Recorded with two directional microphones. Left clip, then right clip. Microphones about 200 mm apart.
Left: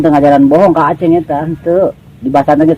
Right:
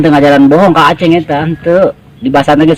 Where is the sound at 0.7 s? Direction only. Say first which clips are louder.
Right 3 dB; 40° right (ahead or behind).